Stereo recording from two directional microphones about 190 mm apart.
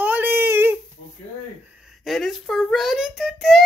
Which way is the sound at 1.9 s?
Centre (ahead or behind).